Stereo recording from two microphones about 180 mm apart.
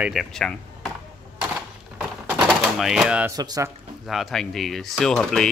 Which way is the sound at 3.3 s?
20° right (ahead or behind).